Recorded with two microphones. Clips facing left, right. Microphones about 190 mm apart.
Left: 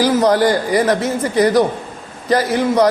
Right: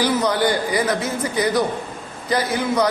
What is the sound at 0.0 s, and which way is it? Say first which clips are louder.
Speech: left 6 dB; 40° left (ahead or behind).